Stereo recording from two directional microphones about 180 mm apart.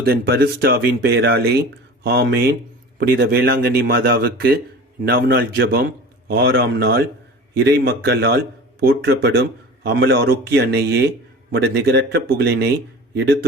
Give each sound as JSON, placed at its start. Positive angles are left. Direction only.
{"t": 0.0, "sound": "speech", "side_deg": -60}